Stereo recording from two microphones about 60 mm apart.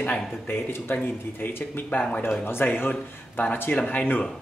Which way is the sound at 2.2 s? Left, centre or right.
Left.